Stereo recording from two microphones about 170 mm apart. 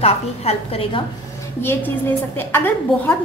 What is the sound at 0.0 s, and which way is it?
A woman's voice, 35° left (ahead or behind).